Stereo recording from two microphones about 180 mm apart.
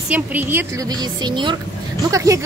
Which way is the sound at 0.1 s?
10° right (ahead or behind).